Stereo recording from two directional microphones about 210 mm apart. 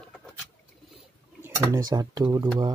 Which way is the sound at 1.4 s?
15° right (ahead or behind).